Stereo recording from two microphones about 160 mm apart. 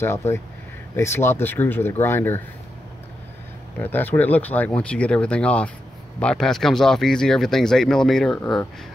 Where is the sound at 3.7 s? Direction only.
10° left (ahead or behind).